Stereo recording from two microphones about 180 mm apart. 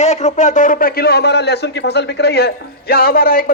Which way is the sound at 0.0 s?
40° left (ahead or behind).